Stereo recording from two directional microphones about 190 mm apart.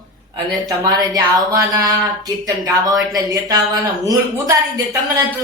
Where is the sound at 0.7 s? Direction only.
20° right (ahead or behind).